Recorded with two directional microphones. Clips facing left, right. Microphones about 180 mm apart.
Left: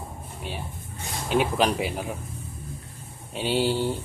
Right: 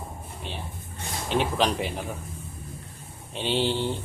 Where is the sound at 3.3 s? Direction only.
5° left (ahead or behind).